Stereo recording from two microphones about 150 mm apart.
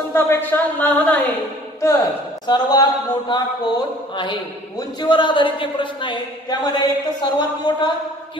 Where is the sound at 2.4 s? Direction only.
30° left (ahead or behind).